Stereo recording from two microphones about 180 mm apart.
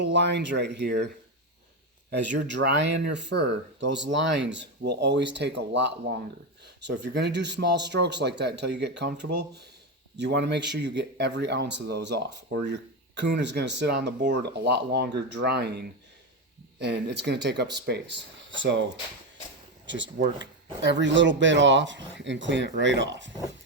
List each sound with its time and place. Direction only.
0.0 s speech: 75° right (ahead or behind)
16.8 s speech: 70° right (ahead or behind)
18.6 s speech: 90° right
19.9 s speech: 90° right